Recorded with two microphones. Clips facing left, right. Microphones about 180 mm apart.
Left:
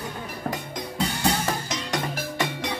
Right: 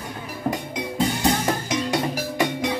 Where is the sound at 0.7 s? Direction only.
10° right (ahead or behind).